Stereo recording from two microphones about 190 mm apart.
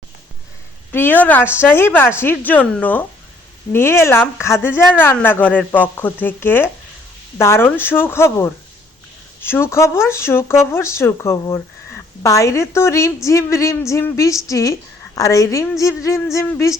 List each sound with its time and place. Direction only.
0.9 s a woman's voice: 10° left (ahead or behind)